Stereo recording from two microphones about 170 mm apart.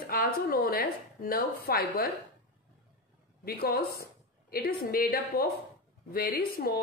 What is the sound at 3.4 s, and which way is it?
Speech, 65° left (ahead or behind).